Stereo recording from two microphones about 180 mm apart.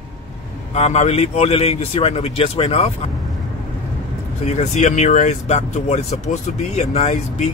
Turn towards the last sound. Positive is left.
turn(degrees=35)  # may be behind; listen again after turning